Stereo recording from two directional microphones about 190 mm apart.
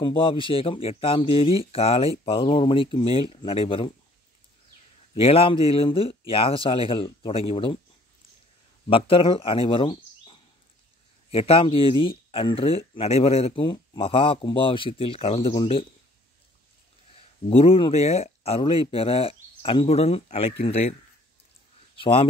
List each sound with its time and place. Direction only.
0.0 s speech: 30° left (ahead or behind)
5.1 s speech: 30° left (ahead or behind)
8.8 s speech: 30° left (ahead or behind)
17.5 s speech: 30° left (ahead or behind)
21.9 s speech: 25° left (ahead or behind)